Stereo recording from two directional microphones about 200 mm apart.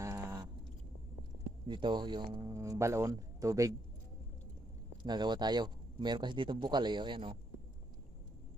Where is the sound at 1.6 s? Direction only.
25° right (ahead or behind).